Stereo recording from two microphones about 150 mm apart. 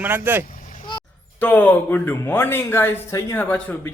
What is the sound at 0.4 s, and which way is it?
Vehicle, 60° left (ahead or behind).